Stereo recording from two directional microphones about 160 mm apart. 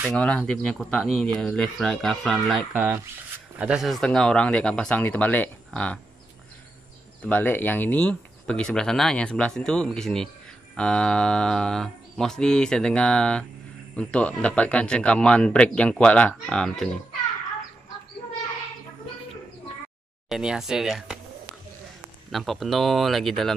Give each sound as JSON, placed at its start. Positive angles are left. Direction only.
{"t": 0.0, "sound": "speech", "side_deg": 5}
{"t": 7.2, "sound": "speech", "side_deg": 10}
{"t": 20.2, "sound": "speech", "side_deg": -5}
{"t": 22.3, "sound": "speech", "side_deg": 0}